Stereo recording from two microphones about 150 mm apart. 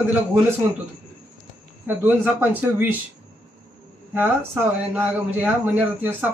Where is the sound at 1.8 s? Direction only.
10° right (ahead or behind).